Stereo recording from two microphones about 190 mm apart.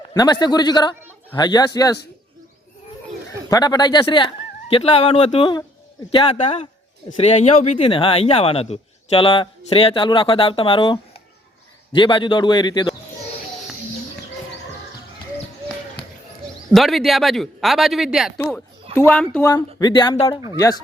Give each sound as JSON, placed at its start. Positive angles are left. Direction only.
{"t": 0.1, "sound": "a man's voice", "side_deg": 20}
{"t": 3.5, "sound": "speech", "side_deg": 20}
{"t": 16.7, "sound": "speech", "side_deg": 0}
{"t": 18.9, "sound": "speech", "side_deg": 10}
{"t": 19.4, "sound": "speech", "side_deg": 20}